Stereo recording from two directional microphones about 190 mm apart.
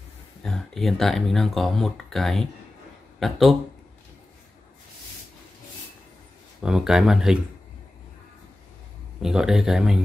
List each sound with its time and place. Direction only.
0.4 s speech: centre (ahead or behind)
6.6 s speech: 5° right (ahead or behind)
9.2 s speech: centre (ahead or behind)